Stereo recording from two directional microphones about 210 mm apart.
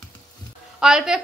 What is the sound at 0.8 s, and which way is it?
Speech, 5° right (ahead or behind).